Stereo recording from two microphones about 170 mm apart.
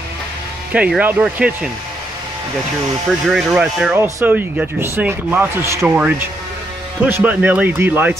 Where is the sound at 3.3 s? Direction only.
5° right (ahead or behind).